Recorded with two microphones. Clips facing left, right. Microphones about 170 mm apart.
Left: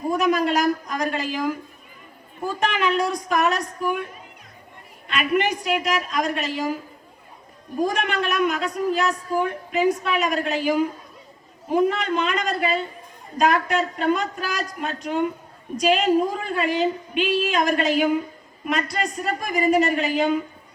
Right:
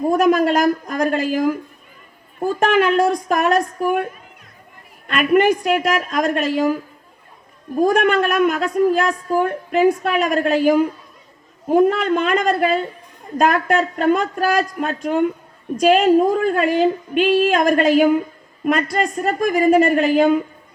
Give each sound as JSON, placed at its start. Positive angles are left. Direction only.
{"t": 0.1, "sound": "a man's voice", "side_deg": -50}
{"t": 7.8, "sound": "a man's voice", "side_deg": -50}